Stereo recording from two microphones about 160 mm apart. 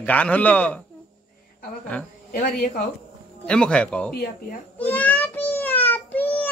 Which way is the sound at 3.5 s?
5° left (ahead or behind).